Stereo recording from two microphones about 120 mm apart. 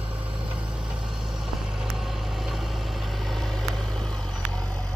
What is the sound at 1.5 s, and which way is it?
Vehicle, centre (ahead or behind).